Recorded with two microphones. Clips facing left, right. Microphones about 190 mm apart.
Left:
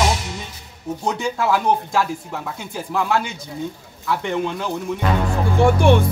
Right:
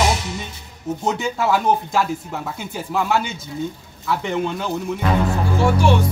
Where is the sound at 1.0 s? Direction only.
Centre (ahead or behind).